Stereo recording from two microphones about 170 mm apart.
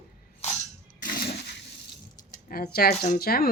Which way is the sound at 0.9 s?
55° left (ahead or behind).